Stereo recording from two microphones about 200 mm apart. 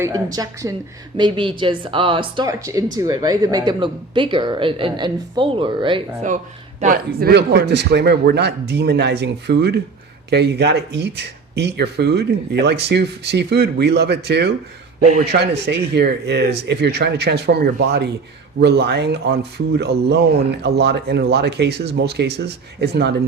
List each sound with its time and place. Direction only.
0.0 s a woman's voice: 20° right (ahead or behind)
6.7 s speech: 45° right (ahead or behind)